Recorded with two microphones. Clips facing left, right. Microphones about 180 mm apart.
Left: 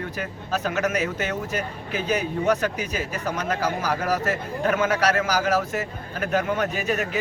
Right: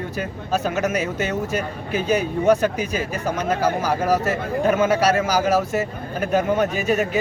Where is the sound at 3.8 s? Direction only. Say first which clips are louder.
Right 4 dB; 25° right (ahead or behind).